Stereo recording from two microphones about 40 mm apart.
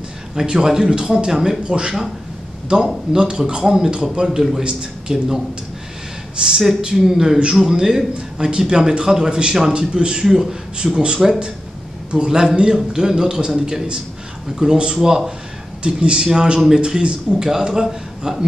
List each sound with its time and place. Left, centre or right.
0.4 s a man's voice: centre
3.2 s a man's voice: right
6.4 s a man's voice: centre
10.2 s a man's voice: centre